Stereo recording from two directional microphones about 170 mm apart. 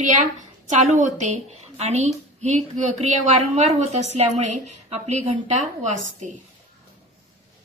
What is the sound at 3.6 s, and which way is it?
A woman's voice, 40° right (ahead or behind).